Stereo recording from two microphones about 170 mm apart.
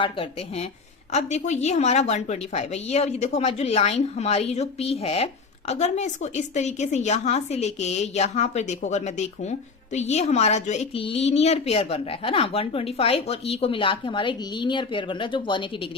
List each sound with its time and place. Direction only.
0.0 s a woman's voice: 35° left (ahead or behind)